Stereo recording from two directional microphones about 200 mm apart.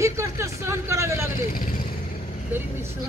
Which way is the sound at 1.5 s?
45° left (ahead or behind).